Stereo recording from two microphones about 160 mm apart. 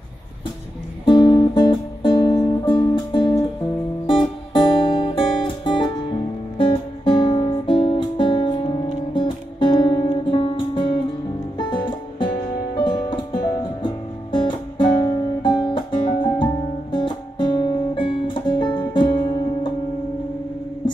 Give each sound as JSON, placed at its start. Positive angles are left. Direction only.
{"t": 1.0, "sound": "music", "side_deg": 30}
{"t": 4.6, "sound": "music", "side_deg": 30}